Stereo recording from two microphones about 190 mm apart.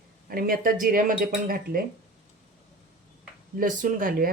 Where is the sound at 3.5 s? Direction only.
45° right (ahead or behind).